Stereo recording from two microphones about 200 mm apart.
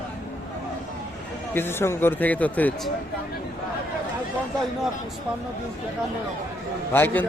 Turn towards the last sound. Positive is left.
turn(degrees=10)  # may be behind; listen again after turning